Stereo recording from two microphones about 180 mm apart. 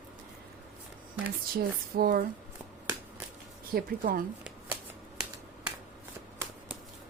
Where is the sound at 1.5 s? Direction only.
55° right (ahead or behind).